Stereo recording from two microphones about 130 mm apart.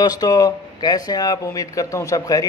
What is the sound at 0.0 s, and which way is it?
A man's voice, 30° left (ahead or behind).